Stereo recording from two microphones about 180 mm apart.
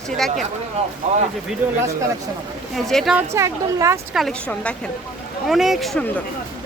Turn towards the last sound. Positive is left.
turn(degrees=0)  # may be behind; listen again after turning